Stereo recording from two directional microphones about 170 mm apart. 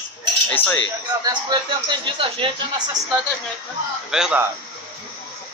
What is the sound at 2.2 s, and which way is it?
Speech, 30° right (ahead or behind).